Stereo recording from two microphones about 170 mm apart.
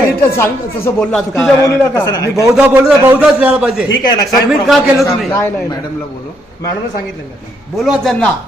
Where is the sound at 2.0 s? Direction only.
20° left (ahead or behind).